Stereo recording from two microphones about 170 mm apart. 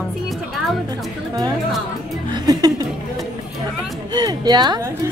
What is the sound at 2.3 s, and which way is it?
Music, 20° right (ahead or behind).